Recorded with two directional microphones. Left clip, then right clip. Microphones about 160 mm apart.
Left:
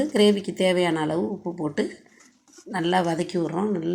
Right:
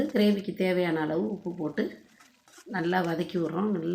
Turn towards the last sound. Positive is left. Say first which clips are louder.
# left 4 dB
turn(degrees=20)  # may be behind; listen again after turning